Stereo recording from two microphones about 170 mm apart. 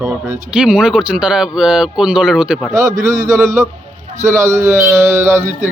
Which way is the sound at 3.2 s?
15° right (ahead or behind).